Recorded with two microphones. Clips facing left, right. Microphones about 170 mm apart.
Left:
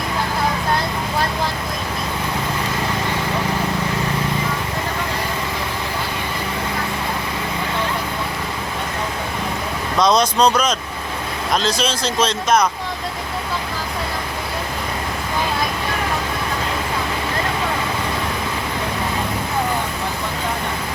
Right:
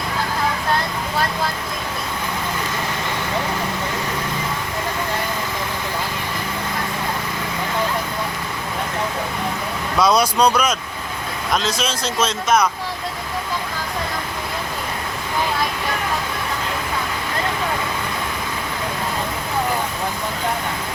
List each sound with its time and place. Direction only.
10.0 s speech: 10° right (ahead or behind)